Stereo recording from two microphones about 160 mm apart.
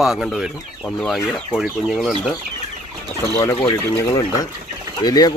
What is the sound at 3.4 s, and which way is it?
Speech, 20° left (ahead or behind).